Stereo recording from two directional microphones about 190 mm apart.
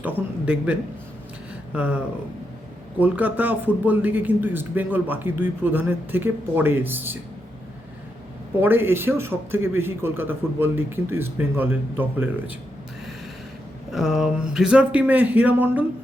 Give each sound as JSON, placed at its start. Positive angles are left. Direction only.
{"t": 0.0, "sound": "a man's voice", "side_deg": -10}
{"t": 8.6, "sound": "a man's voice", "side_deg": -10}
{"t": 13.9, "sound": "a man's voice", "side_deg": -5}